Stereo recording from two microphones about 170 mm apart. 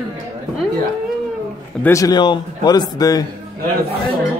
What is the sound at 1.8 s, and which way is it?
Speech, 20° left (ahead or behind).